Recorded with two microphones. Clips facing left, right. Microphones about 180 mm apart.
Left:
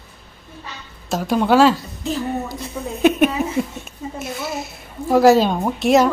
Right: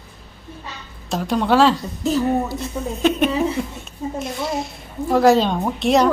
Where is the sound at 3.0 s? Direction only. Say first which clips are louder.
Left 2 dB; 10° left (ahead or behind).